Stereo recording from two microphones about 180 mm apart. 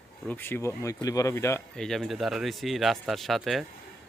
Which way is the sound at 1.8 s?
Centre (ahead or behind).